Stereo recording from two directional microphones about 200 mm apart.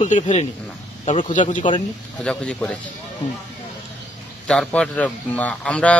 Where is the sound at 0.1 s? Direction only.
35° left (ahead or behind).